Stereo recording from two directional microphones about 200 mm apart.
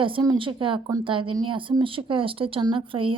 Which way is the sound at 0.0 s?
25° right (ahead or behind).